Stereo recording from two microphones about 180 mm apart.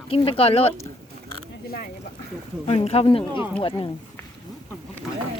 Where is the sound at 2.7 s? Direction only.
35° left (ahead or behind).